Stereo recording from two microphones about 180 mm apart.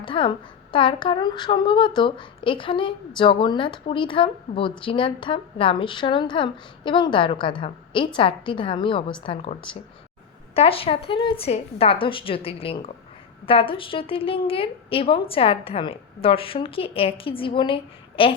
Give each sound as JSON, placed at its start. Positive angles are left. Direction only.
{"t": 0.0, "sound": "a woman's voice", "side_deg": 30}